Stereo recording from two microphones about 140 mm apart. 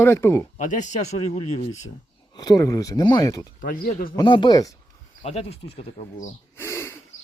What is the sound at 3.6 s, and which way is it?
Speech, 90° left.